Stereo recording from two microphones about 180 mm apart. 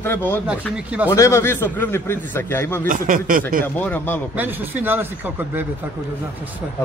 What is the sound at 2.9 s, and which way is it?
Speech, 50° right (ahead or behind).